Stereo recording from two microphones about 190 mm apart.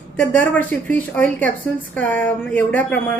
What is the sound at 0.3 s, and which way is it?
Speech, 10° left (ahead or behind).